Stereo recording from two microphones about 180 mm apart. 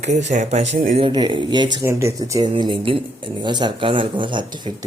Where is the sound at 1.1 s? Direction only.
25° right (ahead or behind).